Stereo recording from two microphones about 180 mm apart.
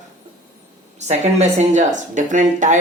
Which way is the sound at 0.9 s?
40° right (ahead or behind).